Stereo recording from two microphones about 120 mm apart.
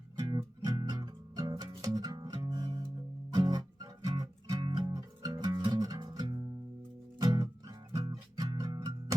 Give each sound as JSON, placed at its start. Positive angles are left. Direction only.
{"t": 0.2, "sound": "music", "side_deg": -35}